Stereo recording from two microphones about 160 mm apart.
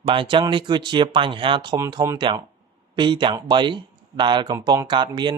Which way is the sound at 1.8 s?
20° right (ahead or behind).